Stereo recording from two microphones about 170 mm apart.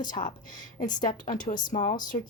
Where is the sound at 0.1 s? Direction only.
50° left (ahead or behind).